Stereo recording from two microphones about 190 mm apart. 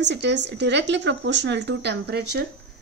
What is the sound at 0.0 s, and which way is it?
A woman's voice, 65° right (ahead or behind).